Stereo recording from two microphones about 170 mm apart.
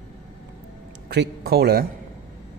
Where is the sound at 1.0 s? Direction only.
70° right (ahead or behind).